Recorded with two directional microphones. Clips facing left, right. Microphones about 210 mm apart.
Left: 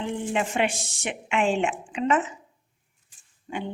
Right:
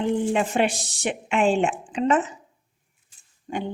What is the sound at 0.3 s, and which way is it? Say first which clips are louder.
A woman's voice: right 3 dB; 35° right (ahead or behind).